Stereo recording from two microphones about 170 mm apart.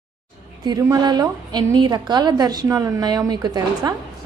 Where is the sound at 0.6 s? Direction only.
20° right (ahead or behind).